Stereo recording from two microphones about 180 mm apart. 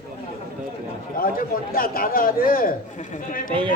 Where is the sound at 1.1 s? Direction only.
55° left (ahead or behind).